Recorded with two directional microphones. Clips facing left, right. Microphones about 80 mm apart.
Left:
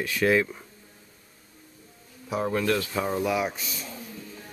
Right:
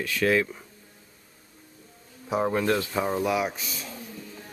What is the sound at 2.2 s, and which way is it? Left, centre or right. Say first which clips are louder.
Speech: right 1 dB; right.